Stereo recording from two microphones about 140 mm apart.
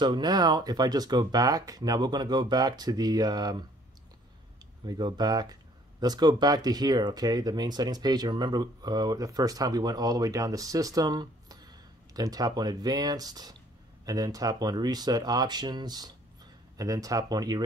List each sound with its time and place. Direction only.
0.0 s speech: 30° right (ahead or behind)
4.8 s speech: 30° right (ahead or behind)